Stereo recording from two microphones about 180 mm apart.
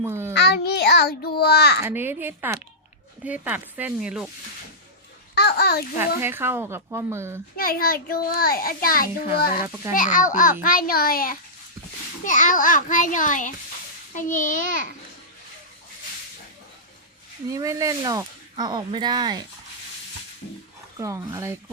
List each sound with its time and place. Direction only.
0.0 s a child's voice: 15° right (ahead or behind)
0.3 s a child's voice: 65° left (ahead or behind)
1.8 s speech: 10° right (ahead or behind)
5.3 s a child's voice: 65° left (ahead or behind)
6.2 s speech: 15° right (ahead or behind)
7.5 s a child's voice: 55° left (ahead or behind)
9.6 s speech: 15° right (ahead or behind)
9.9 s a child's voice: 45° left (ahead or behind)
17.5 s speech: 20° right (ahead or behind)
21.0 s speech: 20° right (ahead or behind)